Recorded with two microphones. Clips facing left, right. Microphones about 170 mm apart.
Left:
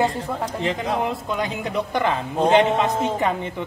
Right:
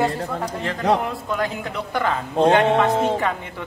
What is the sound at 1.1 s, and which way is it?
Speech, 20° left (ahead or behind).